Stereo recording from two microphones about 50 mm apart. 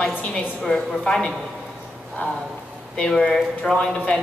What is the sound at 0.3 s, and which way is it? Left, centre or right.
A woman's voice, centre.